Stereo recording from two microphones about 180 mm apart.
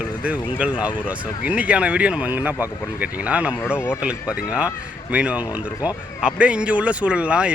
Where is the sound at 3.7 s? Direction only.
10° left (ahead or behind).